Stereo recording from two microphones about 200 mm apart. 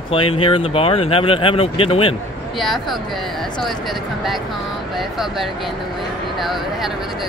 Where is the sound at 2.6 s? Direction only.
Centre (ahead or behind).